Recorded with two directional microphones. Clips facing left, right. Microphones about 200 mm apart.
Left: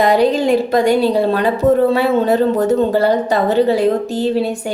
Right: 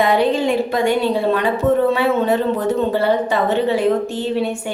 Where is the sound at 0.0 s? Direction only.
40° left (ahead or behind).